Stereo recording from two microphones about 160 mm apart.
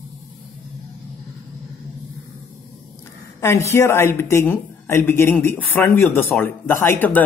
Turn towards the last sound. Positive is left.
turn(degrees=10)  # may be behind; listen again after turning